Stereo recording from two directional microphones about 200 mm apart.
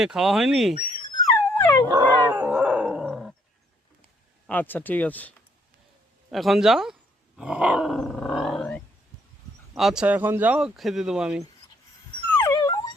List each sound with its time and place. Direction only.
0.0 s speech: centre (ahead or behind)
1.1 s dog: 15° left (ahead or behind)
1.9 s dog: 20° right (ahead or behind)
2.4 s dog: 10° right (ahead or behind)
4.4 s speech: 10° left (ahead or behind)
6.3 s speech: centre (ahead or behind)
7.3 s roar: 5° right (ahead or behind)
9.7 s speech: centre (ahead or behind)
12.5 s a sound: 20° left (ahead or behind)